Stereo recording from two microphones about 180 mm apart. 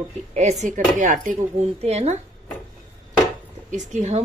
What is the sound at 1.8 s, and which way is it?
Speech, 35° right (ahead or behind).